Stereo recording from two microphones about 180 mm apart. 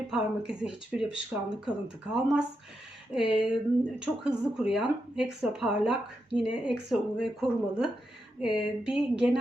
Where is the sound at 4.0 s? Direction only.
5° right (ahead or behind).